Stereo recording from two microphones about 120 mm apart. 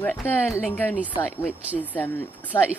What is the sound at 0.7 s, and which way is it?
Speech, 15° left (ahead or behind).